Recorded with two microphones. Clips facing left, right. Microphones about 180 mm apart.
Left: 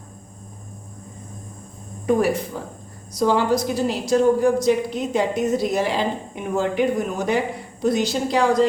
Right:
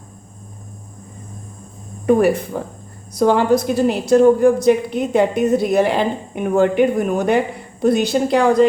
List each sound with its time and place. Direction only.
2.0 s a woman's voice: 60° right (ahead or behind)